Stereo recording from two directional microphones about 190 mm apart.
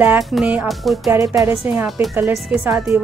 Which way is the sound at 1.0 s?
15° right (ahead or behind).